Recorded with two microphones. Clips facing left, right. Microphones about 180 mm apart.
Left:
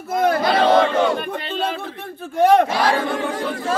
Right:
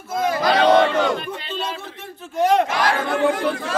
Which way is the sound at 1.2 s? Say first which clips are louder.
Left 4 dB; 55° left (ahead or behind).